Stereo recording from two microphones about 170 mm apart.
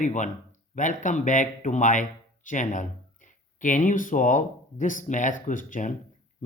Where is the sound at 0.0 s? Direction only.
45° left (ahead or behind).